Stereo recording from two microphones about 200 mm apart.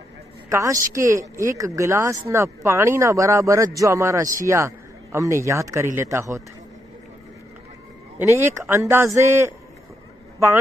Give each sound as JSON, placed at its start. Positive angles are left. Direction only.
{"t": 0.5, "sound": "a man's voice", "side_deg": -15}
{"t": 8.4, "sound": "speech", "side_deg": -10}